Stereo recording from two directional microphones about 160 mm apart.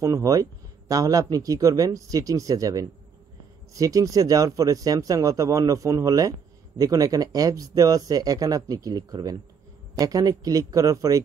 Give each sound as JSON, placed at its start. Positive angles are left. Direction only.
{"t": 0.0, "sound": "speech", "side_deg": -20}